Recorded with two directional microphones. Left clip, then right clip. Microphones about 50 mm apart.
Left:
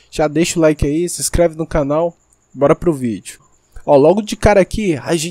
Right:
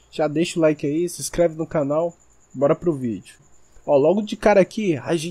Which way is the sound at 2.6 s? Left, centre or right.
Left.